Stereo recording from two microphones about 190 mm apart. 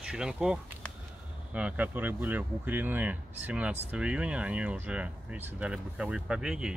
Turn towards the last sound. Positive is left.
turn(degrees=-5)  # may be behind; listen again after turning